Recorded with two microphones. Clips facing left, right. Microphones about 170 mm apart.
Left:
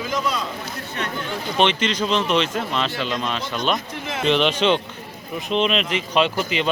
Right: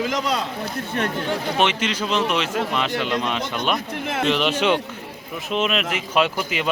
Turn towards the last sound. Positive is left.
turn(degrees=-5)  # may be behind; listen again after turning